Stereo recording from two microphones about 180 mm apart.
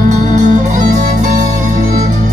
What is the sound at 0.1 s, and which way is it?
Music, 45° right (ahead or behind).